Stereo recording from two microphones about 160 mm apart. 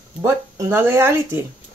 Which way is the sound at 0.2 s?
15° right (ahead or behind).